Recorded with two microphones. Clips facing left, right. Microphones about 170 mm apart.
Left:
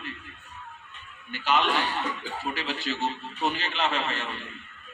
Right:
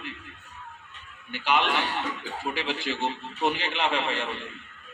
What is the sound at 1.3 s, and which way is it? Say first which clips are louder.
A man's voice: even; 15° right (ahead or behind).